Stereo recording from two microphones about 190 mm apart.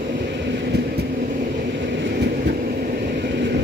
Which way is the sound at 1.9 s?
65° right (ahead or behind).